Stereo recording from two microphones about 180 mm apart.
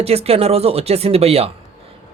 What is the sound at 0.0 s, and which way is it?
Speech, 35° right (ahead or behind).